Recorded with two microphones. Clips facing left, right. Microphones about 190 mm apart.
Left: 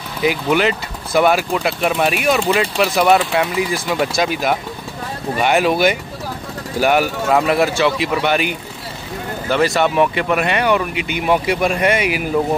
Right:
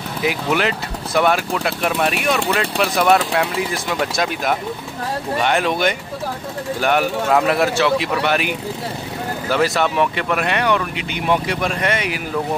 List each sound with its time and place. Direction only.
0.2 s speech: centre (ahead or behind)